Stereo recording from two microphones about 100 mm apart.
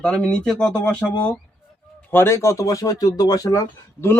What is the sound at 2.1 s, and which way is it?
Speech, 25° left (ahead or behind).